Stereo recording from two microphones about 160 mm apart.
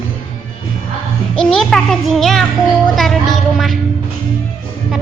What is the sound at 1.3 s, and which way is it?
A child's voice, 5° left (ahead or behind).